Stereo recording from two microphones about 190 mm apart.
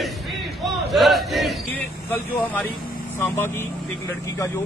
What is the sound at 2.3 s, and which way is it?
Speech, 10° left (ahead or behind).